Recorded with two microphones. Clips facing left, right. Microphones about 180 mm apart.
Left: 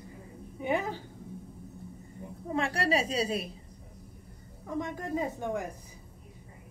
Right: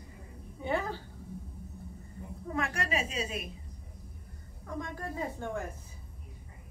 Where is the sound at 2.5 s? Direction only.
30° left (ahead or behind).